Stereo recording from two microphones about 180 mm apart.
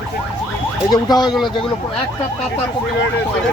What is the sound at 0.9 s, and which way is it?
Speech, 25° left (ahead or behind).